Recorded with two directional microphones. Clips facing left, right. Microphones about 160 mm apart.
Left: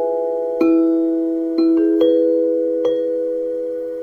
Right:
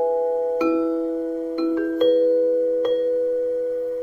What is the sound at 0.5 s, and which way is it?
Music, 25° left (ahead or behind).